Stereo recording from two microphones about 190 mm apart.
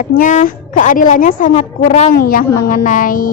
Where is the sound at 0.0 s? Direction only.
45° left (ahead or behind).